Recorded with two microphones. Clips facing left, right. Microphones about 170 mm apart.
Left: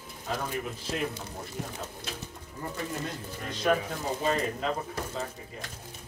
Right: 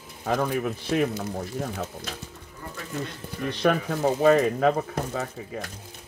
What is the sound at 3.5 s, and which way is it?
Speech, 65° right (ahead or behind).